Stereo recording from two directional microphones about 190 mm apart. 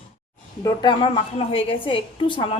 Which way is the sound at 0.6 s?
20° left (ahead or behind).